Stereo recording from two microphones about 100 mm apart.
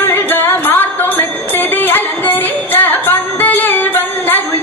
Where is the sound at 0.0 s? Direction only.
20° left (ahead or behind).